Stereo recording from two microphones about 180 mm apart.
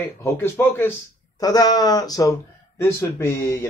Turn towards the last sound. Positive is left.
turn(degrees=15)  # may be behind; listen again after turning